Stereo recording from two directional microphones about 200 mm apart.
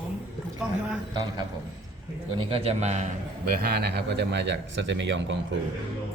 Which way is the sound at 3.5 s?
50° right (ahead or behind).